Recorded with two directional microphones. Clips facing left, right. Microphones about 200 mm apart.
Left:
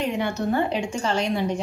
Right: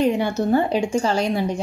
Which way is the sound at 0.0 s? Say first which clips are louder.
Right 5 dB; 35° right (ahead or behind).